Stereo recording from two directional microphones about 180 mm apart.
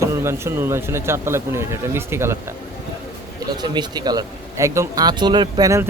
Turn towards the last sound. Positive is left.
turn(degrees=-20)  # may be behind; listen again after turning